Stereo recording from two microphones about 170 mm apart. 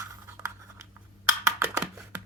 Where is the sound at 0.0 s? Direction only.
15° right (ahead or behind).